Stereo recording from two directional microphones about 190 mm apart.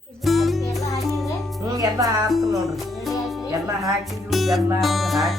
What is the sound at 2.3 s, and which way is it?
Music, centre (ahead or behind).